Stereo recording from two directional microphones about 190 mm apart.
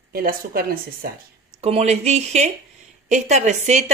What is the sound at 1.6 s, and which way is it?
Speech, 35° right (ahead or behind).